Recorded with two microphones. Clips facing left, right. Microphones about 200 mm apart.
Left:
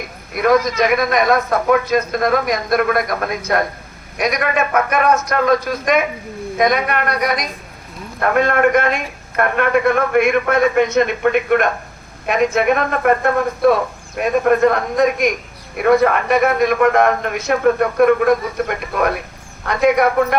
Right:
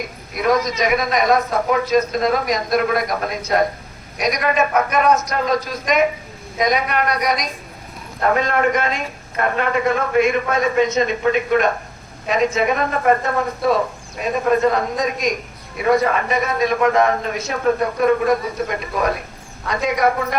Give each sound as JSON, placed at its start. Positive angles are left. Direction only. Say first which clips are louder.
{"t": 0.4, "sound": "a woman's voice", "louder": "left 4 dB", "side_deg": 55}